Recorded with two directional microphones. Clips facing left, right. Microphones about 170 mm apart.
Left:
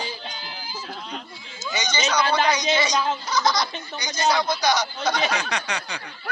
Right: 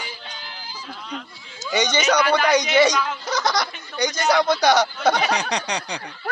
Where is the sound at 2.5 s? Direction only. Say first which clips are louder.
Right 6 dB; 65° right (ahead or behind).